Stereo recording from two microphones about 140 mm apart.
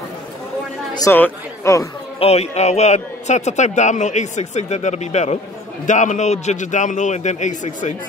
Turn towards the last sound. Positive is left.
turn(degrees=60)  # may be behind; listen again after turning